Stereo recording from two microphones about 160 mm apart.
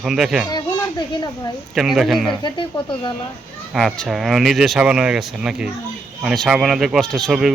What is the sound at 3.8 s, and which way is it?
Speech, centre (ahead or behind).